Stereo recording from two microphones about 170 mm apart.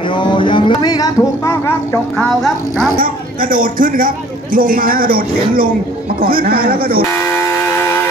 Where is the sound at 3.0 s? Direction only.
55° right (ahead or behind).